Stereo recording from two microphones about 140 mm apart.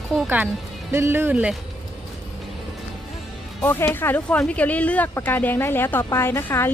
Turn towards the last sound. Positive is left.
turn(degrees=15)  # may be behind; listen again after turning